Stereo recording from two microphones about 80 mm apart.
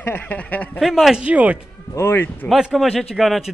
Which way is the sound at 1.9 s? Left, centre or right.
Left.